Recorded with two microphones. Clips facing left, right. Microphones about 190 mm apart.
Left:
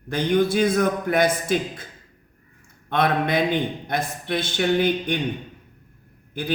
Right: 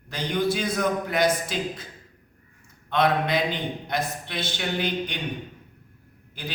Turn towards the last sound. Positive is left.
turn(degrees=50)  # may be behind; listen again after turning